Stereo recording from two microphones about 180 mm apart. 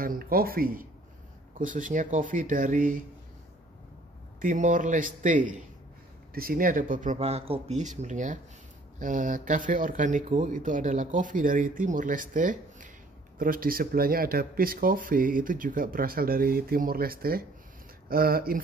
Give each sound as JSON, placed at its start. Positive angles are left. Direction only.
{"t": 0.0, "sound": "speech", "side_deg": -55}
{"t": 4.4, "sound": "speech", "side_deg": -45}